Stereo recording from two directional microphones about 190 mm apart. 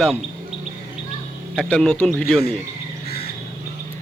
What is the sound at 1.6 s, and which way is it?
Speech, 5° left (ahead or behind).